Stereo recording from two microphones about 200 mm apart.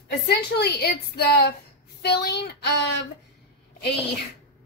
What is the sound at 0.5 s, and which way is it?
A woman's voice, 55° left (ahead or behind).